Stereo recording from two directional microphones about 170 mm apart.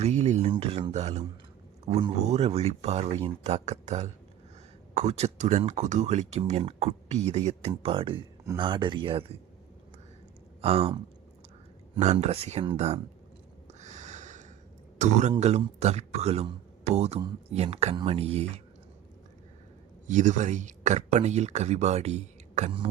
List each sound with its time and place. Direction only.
0.0 s a sound: 40° right (ahead or behind)
0.5 s speech: 35° right (ahead or behind)
2.0 s speech: 20° right (ahead or behind)
2.2 s speech: 40° right (ahead or behind)
10.6 s speech: 35° right (ahead or behind)
13.7 s a sound: 45° right (ahead or behind)
14.9 s speech: 45° right (ahead or behind)
20.1 s speech: 45° right (ahead or behind)